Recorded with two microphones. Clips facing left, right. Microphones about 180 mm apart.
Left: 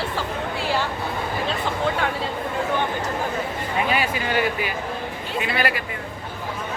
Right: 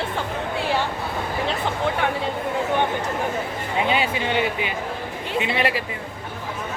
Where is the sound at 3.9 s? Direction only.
25° right (ahead or behind).